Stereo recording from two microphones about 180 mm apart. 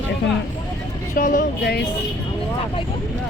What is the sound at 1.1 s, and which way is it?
Speech, 50° left (ahead or behind).